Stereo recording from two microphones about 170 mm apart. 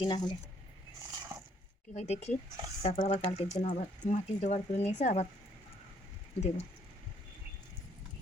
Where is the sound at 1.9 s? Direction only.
40° left (ahead or behind).